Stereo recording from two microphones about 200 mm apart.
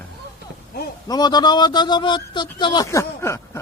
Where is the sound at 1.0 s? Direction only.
20° left (ahead or behind).